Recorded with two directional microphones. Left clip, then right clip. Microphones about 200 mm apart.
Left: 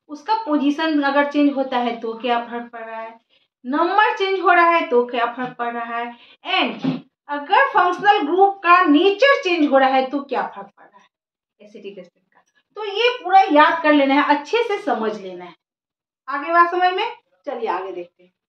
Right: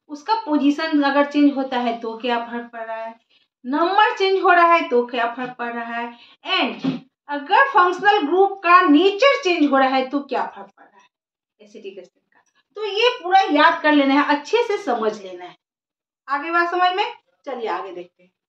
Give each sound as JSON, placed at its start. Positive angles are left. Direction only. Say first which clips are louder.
{"t": 0.1, "sound": "a child's voice", "louder": "even", "side_deg": 0}
{"t": 11.5, "sound": "speech", "louder": "even", "side_deg": 0}
{"t": 13.5, "sound": "a child's voice", "louder": "left 2 dB", "side_deg": -5}
{"t": 16.3, "sound": "a woman's voice", "louder": "left 4 dB", "side_deg": -15}